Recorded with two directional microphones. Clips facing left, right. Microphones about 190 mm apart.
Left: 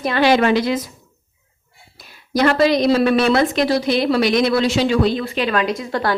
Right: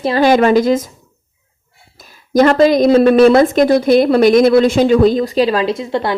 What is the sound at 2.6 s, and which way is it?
A woman's voice, 50° right (ahead or behind).